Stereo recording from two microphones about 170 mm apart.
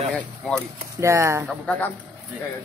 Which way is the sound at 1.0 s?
15° right (ahead or behind).